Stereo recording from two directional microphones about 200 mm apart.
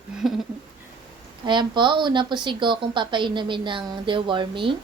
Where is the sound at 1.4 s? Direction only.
25° right (ahead or behind).